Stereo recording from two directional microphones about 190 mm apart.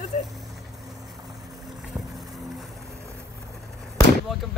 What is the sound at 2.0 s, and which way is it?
Boat, 20° right (ahead or behind).